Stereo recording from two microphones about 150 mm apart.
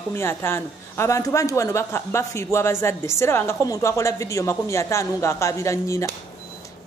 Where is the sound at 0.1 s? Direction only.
15° left (ahead or behind).